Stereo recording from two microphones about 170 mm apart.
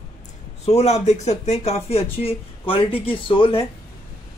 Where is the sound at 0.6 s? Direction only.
40° left (ahead or behind).